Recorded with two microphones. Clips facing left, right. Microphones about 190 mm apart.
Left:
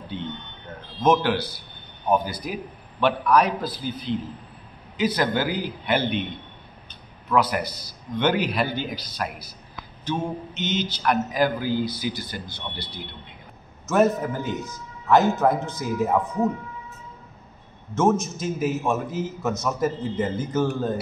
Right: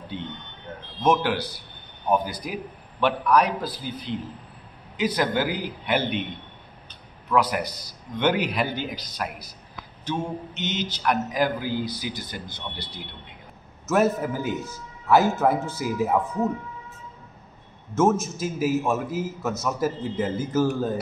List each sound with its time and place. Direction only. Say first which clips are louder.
1.2 s a man's voice: left 2 dB; 15° right (ahead or behind)
7.3 s a man's voice: left 1 dB; 15° right (ahead or behind)
13.8 s a man's voice: left 1 dB; 5° right (ahead or behind)
17.9 s a man's voice: even; 5° right (ahead or behind)